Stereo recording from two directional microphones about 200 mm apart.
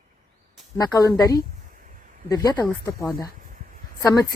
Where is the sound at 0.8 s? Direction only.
15° left (ahead or behind).